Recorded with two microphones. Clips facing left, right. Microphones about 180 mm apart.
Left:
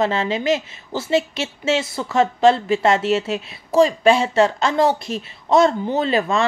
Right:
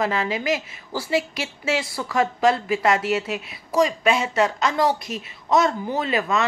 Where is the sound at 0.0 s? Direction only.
25° left (ahead or behind).